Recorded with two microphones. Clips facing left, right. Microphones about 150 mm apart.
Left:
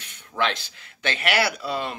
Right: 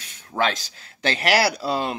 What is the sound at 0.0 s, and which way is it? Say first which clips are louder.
Speech: right 3 dB; 40° right (ahead or behind).